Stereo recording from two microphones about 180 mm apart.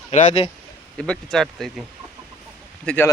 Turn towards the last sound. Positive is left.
turn(degrees=10)  # may be behind; listen again after turning